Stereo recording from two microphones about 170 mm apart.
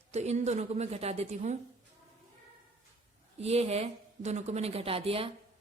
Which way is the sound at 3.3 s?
40° right (ahead or behind).